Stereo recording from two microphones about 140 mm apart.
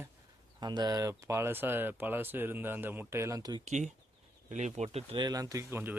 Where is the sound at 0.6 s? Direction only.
30° right (ahead or behind).